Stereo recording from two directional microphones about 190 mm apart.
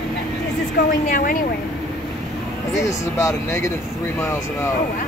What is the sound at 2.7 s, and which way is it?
Speech, 15° left (ahead or behind).